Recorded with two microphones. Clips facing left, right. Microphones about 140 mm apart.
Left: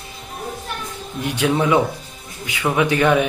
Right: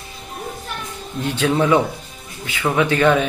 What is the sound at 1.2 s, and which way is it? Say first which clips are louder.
A man's voice: right 1 dB; 15° left (ahead or behind).